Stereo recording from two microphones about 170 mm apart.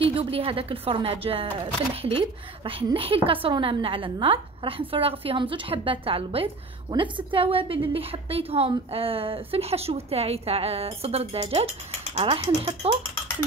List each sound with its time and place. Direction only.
0.0 s a woman's voice: 35° right (ahead or behind)